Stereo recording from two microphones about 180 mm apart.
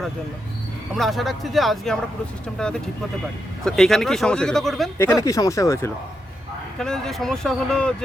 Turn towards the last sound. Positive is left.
turn(degrees=5)  # may be behind; listen again after turning